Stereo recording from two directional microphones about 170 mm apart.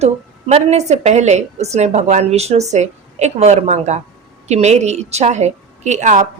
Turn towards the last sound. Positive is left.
turn(degrees=-45)  # may be behind; listen again after turning